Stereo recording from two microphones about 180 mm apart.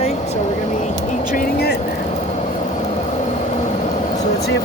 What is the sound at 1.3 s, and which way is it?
Speech, 60° left (ahead or behind).